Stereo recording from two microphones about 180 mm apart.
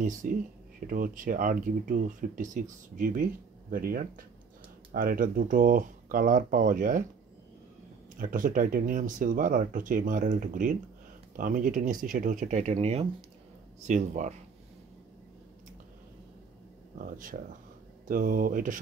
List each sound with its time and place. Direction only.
0.0 s speech: 50° right (ahead or behind)
8.2 s speech: 50° right (ahead or behind)
17.0 s speech: 50° right (ahead or behind)